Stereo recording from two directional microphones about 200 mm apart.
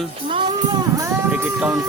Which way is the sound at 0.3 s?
25° right (ahead or behind).